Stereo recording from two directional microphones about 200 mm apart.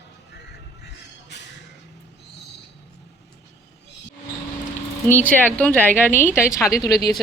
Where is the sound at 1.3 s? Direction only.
60° left (ahead or behind).